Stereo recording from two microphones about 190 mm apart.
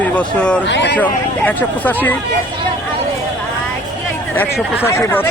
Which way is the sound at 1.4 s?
10° left (ahead or behind).